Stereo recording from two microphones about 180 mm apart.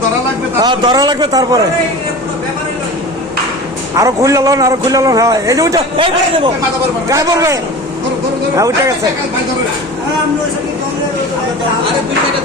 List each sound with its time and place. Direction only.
0.6 s a man's voice: 25° right (ahead or behind)
3.9 s a man's voice: 20° right (ahead or behind)
7.1 s a man's voice: 15° right (ahead or behind)